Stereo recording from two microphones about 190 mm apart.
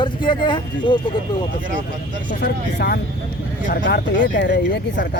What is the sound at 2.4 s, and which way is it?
Speech, 55° left (ahead or behind).